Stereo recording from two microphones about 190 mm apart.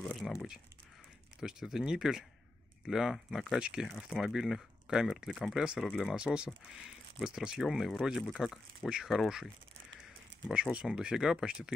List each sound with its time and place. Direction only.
0.0 s crumpling: centre (ahead or behind)
1.4 s speech: centre (ahead or behind)
10.5 s speech: 5° right (ahead or behind)